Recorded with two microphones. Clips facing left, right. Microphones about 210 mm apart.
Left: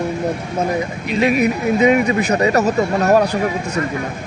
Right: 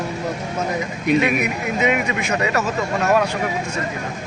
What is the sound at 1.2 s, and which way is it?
Speech, 35° left (ahead or behind).